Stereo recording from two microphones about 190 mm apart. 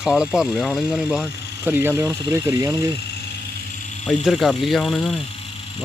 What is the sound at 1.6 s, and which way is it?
Speech, 10° right (ahead or behind).